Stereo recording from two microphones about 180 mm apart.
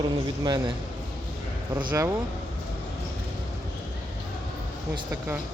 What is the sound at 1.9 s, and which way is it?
Speech, 15° right (ahead or behind).